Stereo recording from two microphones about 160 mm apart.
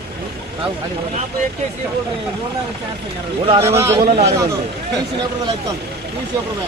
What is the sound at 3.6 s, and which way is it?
Speech, 15° right (ahead or behind).